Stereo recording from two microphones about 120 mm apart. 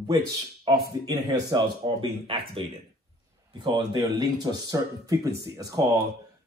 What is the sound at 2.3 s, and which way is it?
Speech, 50° right (ahead or behind).